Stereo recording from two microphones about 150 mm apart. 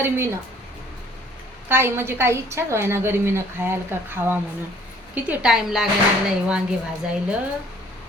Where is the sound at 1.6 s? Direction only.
15° right (ahead or behind).